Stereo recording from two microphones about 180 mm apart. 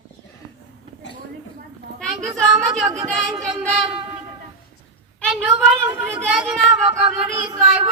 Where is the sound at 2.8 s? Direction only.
25° right (ahead or behind).